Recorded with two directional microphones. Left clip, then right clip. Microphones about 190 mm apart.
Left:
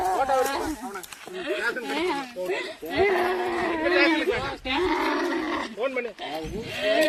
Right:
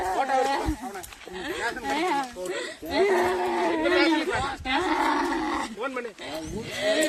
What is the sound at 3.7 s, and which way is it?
Wild animals, 25° right (ahead or behind).